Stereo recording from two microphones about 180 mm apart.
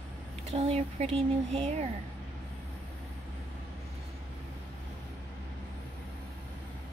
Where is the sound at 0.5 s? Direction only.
35° right (ahead or behind).